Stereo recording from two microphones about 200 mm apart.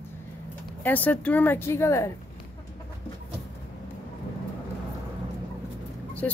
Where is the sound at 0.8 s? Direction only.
10° left (ahead or behind).